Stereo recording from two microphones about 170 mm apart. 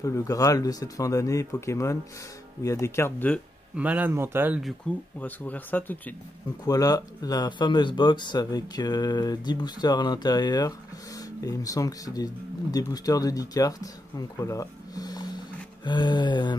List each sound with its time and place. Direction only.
0.0 s speech: 20° left (ahead or behind)
3.7 s speech: 10° right (ahead or behind)
4.9 s speech: 5° left (ahead or behind)
6.6 s speech: 20° left (ahead or behind)